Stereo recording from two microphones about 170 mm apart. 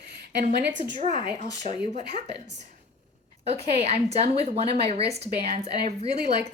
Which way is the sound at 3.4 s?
40° right (ahead or behind).